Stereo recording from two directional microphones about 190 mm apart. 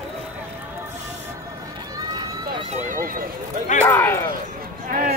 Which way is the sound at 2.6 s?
35° right (ahead or behind).